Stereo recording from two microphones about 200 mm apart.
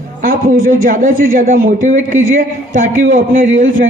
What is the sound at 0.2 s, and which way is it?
A man's voice, 45° right (ahead or behind).